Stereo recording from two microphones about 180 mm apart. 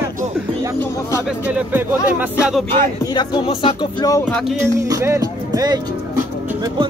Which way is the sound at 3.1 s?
25° left (ahead or behind).